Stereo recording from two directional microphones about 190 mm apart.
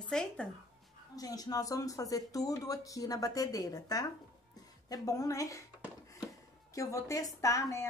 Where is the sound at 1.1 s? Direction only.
20° left (ahead or behind).